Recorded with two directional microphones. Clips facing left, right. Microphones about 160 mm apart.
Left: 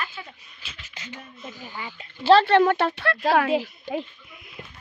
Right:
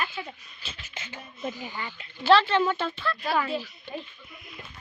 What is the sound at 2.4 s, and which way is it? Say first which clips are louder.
Speech: left 7 dB; 65° left (ahead or behind).